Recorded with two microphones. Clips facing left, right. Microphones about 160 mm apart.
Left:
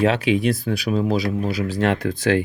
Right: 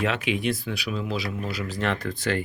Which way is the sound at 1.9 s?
70° left (ahead or behind).